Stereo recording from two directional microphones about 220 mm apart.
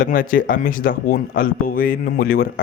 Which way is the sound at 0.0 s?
40° left (ahead or behind).